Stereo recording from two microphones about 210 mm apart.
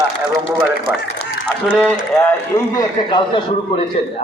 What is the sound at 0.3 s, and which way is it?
Speech, 15° right (ahead or behind).